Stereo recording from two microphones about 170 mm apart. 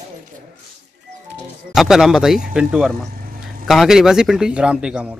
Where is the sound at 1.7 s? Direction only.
5° right (ahead or behind).